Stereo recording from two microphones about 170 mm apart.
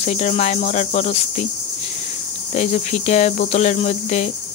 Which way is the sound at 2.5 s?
45° left (ahead or behind).